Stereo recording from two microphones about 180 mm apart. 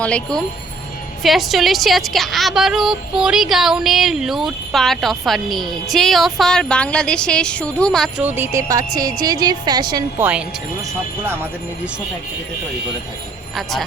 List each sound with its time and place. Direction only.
0.0 s a woman's voice: 5° left (ahead or behind)
8.2 s a woman's voice: 10° right (ahead or behind)
10.2 s speech: 10° right (ahead or behind)
13.6 s a woman's voice: centre (ahead or behind)